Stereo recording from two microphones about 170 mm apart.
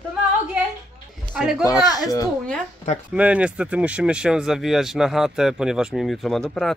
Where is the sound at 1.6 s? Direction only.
20° left (ahead or behind).